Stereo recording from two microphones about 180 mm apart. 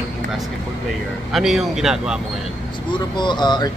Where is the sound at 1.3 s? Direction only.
Centre (ahead or behind).